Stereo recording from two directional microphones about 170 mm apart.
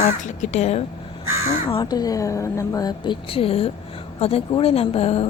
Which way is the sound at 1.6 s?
25° left (ahead or behind).